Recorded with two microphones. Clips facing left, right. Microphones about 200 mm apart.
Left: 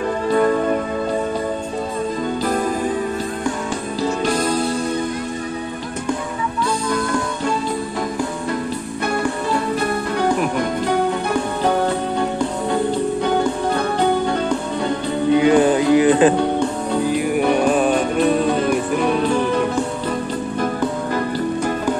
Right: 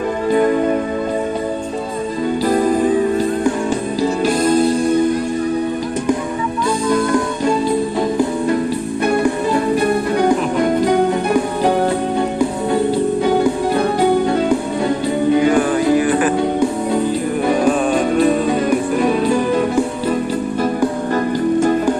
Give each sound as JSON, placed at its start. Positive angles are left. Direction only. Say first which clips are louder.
{"t": 15.4, "sound": "music", "louder": "even", "side_deg": 20}
{"t": 17.6, "sound": "music", "louder": "right 1 dB", "side_deg": 5}